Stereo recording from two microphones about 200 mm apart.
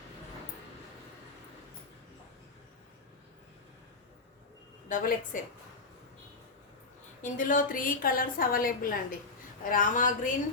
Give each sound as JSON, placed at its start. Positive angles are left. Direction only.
{"t": 4.9, "sound": "a woman's voice", "side_deg": 40}
{"t": 7.2, "sound": "a woman's voice", "side_deg": 40}